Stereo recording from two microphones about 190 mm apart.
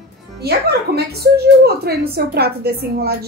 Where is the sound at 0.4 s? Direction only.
55° right (ahead or behind).